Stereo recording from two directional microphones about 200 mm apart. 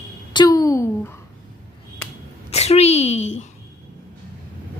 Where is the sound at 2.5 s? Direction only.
30° left (ahead or behind).